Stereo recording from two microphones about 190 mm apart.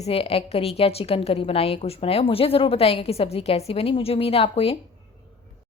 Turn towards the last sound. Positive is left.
turn(degrees=30)  # may be behind; listen again after turning